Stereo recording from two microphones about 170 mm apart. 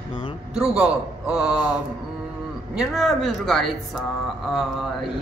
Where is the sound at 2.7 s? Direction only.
Centre (ahead or behind).